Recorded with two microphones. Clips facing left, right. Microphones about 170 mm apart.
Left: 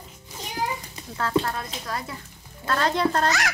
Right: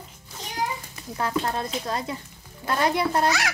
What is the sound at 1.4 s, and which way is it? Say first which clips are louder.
A child's voice: right 3 dB; 25° right (ahead or behind).